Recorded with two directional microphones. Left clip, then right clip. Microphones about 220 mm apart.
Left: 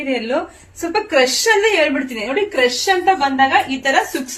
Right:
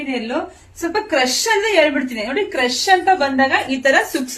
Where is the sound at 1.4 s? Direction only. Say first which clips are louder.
Left 1 dB; 15° right (ahead or behind).